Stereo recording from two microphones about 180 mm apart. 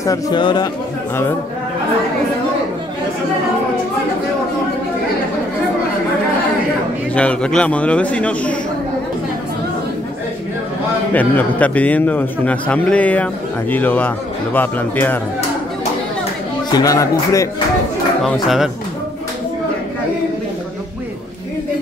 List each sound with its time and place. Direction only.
0.0 s speech: 20° left (ahead or behind)
7.2 s a man's voice: 5° left (ahead or behind)
11.1 s a man's voice: 10° left (ahead or behind)
16.7 s speech: 20° left (ahead or behind)
18.2 s speech: centre (ahead or behind)